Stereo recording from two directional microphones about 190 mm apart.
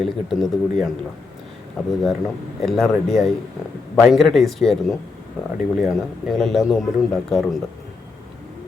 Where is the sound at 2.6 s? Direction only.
Centre (ahead or behind).